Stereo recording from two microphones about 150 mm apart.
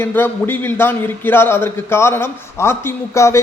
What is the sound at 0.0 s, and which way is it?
A man's voice, 15° left (ahead or behind).